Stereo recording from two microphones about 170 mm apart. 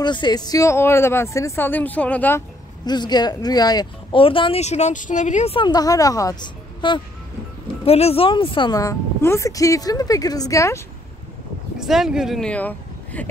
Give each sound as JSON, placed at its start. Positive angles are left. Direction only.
{"t": 0.0, "sound": "speech", "side_deg": 25}
{"t": 2.8, "sound": "speech", "side_deg": 25}
{"t": 11.8, "sound": "speech", "side_deg": -5}